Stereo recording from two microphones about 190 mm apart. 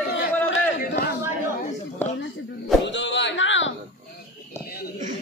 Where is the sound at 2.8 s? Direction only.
70° left (ahead or behind).